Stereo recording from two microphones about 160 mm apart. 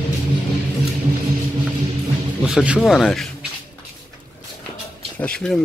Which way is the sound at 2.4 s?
5° right (ahead or behind).